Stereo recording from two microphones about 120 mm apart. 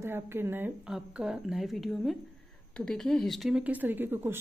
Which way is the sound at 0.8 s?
5° right (ahead or behind).